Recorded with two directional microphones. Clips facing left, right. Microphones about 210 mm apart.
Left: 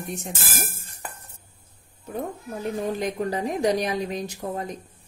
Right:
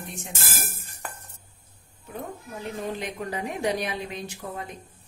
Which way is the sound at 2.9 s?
40° left (ahead or behind).